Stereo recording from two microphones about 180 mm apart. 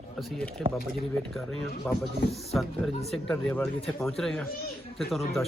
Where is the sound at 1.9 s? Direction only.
5° left (ahead or behind).